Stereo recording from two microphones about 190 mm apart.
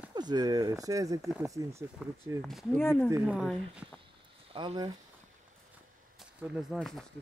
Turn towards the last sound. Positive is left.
turn(degrees=0)  # may be behind; listen again after turning